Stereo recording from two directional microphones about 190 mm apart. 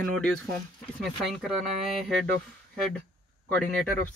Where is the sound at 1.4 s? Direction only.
Centre (ahead or behind).